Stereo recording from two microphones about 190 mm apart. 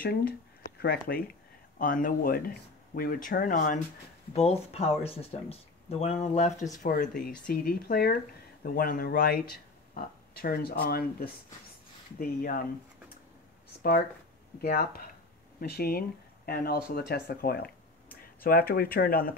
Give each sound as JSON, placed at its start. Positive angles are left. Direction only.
{"t": 0.7, "sound": "speech", "side_deg": 55}
{"t": 4.3, "sound": "speech", "side_deg": 35}
{"t": 6.8, "sound": "speech", "side_deg": 50}
{"t": 14.6, "sound": "speech", "side_deg": 50}